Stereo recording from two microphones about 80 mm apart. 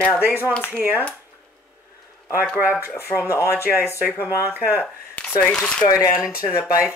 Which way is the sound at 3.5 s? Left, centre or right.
Right.